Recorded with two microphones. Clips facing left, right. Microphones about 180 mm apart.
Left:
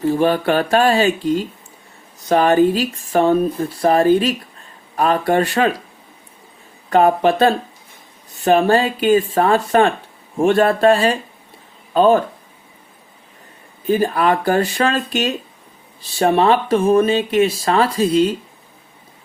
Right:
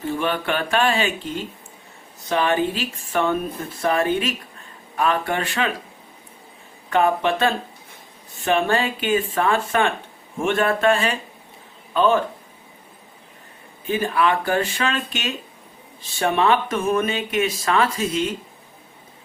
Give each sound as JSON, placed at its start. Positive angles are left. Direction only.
{"t": 0.1, "sound": "speech", "side_deg": 40}
{"t": 6.9, "sound": "speech", "side_deg": 35}
{"t": 13.8, "sound": "speech", "side_deg": 40}